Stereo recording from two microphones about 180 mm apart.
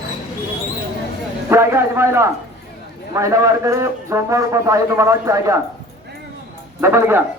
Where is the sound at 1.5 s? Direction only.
15° right (ahead or behind).